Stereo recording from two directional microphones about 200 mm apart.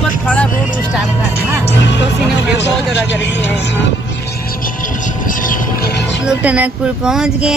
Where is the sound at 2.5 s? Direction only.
60° left (ahead or behind); by 5.9 s 45° left (ahead or behind).